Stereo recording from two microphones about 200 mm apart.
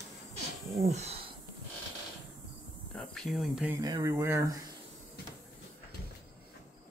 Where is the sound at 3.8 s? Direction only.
20° right (ahead or behind).